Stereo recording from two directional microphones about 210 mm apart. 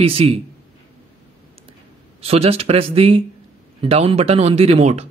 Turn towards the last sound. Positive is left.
turn(degrees=-30)  # may be behind; listen again after turning